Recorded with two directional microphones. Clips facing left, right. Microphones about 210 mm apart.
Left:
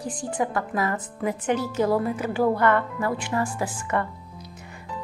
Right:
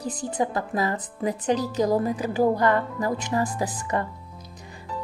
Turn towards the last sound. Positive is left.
turn(degrees=-35)  # may be behind; listen again after turning